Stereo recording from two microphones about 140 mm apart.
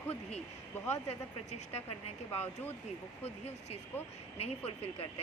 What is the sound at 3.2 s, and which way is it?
Speech, 50° left (ahead or behind).